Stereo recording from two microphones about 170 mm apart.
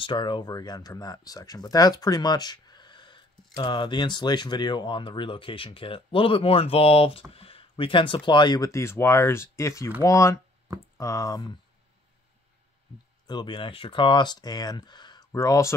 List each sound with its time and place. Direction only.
0.0 s speech: 25° left (ahead or behind)
13.3 s speech: 25° left (ahead or behind)